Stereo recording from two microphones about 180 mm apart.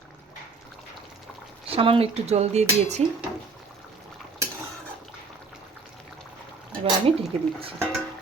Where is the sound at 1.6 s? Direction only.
30° right (ahead or behind).